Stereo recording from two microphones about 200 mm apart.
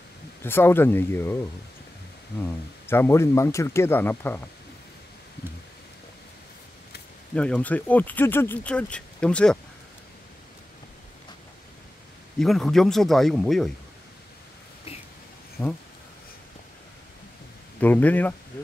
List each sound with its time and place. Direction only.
0.4 s speech: 10° left (ahead or behind)
2.4 s speech: 10° left (ahead or behind)
7.3 s speech: 5° left (ahead or behind)
12.4 s speech: centre (ahead or behind)
15.6 s speech: 15° left (ahead or behind)
17.7 s speech: 10° left (ahead or behind)